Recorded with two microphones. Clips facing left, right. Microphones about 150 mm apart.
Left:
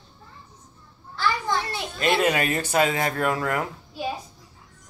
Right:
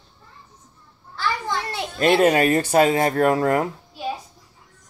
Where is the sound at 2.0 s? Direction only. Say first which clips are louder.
Right 6 dB; 40° right (ahead or behind).